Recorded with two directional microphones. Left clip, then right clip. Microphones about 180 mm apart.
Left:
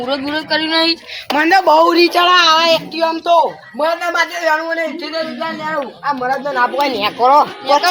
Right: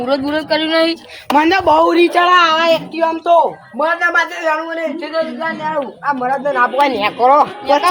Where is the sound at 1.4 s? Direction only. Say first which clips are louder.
Left 1 dB; 55° right (ahead or behind).